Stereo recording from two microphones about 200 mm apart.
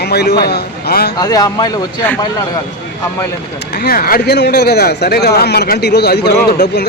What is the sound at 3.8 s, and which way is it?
A man's voice, 50° left (ahead or behind).